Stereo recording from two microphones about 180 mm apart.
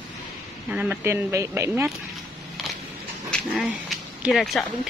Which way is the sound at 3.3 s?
Centre (ahead or behind).